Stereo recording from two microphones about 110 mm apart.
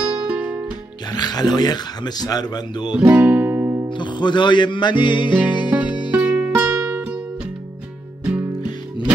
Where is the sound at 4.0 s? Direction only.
45° left (ahead or behind).